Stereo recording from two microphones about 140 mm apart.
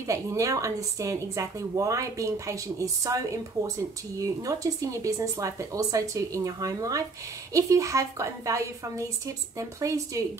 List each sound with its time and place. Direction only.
0.0 s a woman's voice: 25° right (ahead or behind)
5.0 s a woman's voice: 25° right (ahead or behind)